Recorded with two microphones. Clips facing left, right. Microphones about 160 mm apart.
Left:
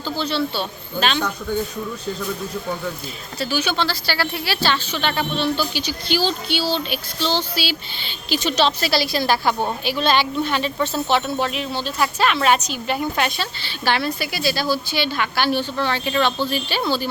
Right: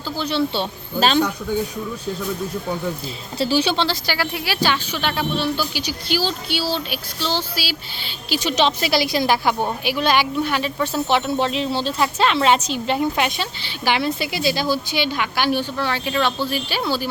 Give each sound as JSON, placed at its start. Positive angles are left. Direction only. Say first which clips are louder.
{"t": 0.2, "sound": "speech", "louder": "right 3 dB", "side_deg": -20}
{"t": 0.9, "sound": "speech", "louder": "right 4 dB", "side_deg": -40}
{"t": 3.3, "sound": "a woman's voice", "louder": "right 3 dB", "side_deg": -30}
{"t": 8.5, "sound": "a woman's voice", "louder": "right 1 dB", "side_deg": -20}
{"t": 11.3, "sound": "a woman's voice", "louder": "right 3 dB", "side_deg": -25}